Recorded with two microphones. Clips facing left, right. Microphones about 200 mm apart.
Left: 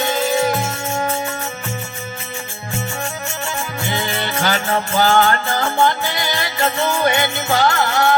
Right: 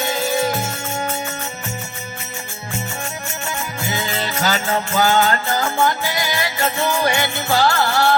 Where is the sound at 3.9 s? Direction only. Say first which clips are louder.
Left 2 dB; 25° left (ahead or behind).